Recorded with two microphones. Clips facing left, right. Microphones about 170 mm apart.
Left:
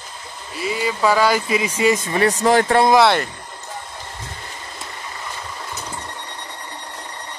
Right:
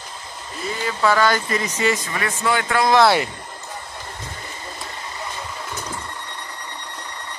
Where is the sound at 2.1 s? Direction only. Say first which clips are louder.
Left 7 dB; 35° left (ahead or behind).